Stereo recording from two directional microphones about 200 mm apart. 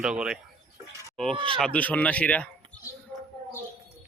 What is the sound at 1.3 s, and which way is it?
Speech, 25° right (ahead or behind).